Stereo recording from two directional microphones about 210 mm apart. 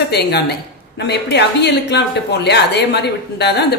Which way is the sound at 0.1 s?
50° left (ahead or behind).